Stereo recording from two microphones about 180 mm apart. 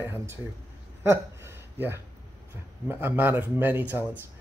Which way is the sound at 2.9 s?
10° right (ahead or behind).